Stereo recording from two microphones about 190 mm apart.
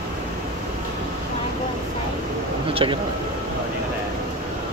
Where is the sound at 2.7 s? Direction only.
25° right (ahead or behind).